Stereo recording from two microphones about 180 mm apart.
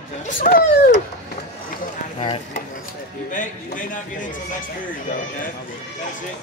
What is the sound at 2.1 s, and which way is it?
Speech, 30° left (ahead or behind).